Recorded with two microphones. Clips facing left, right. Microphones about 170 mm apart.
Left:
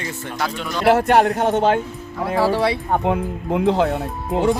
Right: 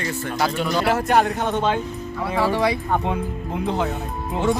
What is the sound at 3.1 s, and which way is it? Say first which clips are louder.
Speech: left 5 dB; 85° left.